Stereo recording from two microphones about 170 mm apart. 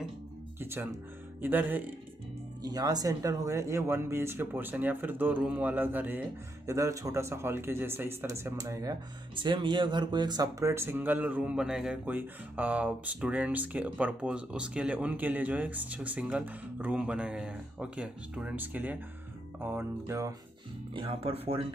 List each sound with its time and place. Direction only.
0.6 s music: 15° right (ahead or behind)
1.4 s speech: 10° right (ahead or behind)
2.6 s speech: 25° right (ahead or behind)
20.9 s speech: 30° right (ahead or behind)